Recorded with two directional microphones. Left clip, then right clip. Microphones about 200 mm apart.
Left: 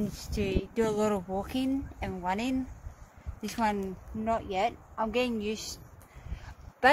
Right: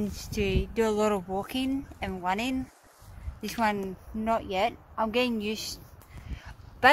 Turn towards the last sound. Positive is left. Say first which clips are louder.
# right 3 dB
turn(degrees=-5)  # may be behind; listen again after turning